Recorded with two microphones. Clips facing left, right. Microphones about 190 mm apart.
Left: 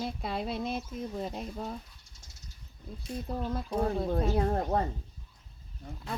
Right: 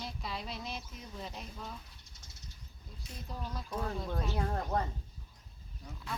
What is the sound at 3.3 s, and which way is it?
Speech, 55° left (ahead or behind).